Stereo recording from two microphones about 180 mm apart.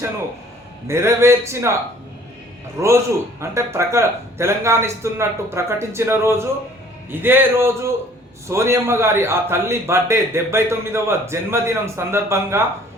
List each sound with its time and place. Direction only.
0.9 s a man's voice: 15° right (ahead or behind)
2.8 s a man's voice: 15° right (ahead or behind)